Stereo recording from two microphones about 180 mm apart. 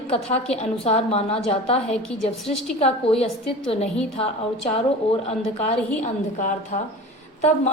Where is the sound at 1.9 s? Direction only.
5° left (ahead or behind).